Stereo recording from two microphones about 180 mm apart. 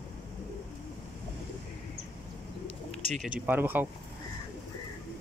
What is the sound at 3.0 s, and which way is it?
Speech, 45° right (ahead or behind).